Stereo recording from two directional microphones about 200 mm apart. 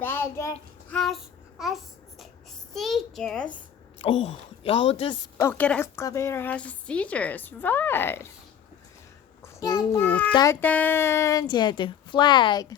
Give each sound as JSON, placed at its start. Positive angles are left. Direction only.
{"t": 0.0, "sound": "child singing", "side_deg": 10}
{"t": 0.9, "sound": "child singing", "side_deg": 0}
{"t": 2.7, "sound": "a sound", "side_deg": 0}
{"t": 4.0, "sound": "a woman's voice", "side_deg": 30}
{"t": 9.4, "sound": "a child's voice", "side_deg": 20}